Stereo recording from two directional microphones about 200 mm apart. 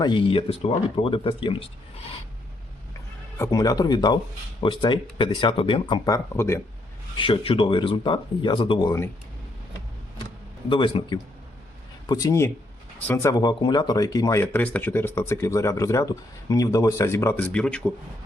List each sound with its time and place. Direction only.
0.0 s speech: 25° left (ahead or behind)
3.3 s speech: 15° left (ahead or behind)
7.2 s speech: 25° left (ahead or behind)
10.7 s speech: 25° left (ahead or behind); by 17.9 s 5° left (ahead or behind)